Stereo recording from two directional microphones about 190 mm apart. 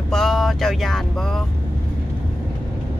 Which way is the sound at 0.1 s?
Centre (ahead or behind).